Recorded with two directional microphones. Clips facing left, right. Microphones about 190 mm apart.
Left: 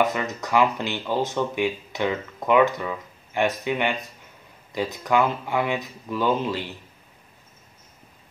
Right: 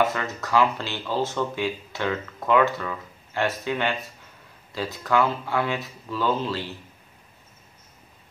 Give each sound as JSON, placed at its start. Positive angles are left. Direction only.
{"t": 0.0, "sound": "speech", "side_deg": 15}